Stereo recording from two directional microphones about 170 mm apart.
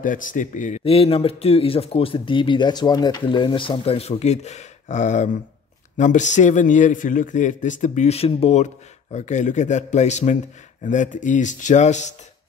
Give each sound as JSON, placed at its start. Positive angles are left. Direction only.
{"t": 0.0, "sound": "a man's voice", "side_deg": 50}